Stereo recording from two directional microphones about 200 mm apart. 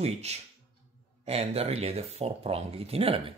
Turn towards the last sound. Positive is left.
turn(degrees=-30)  # may be behind; listen again after turning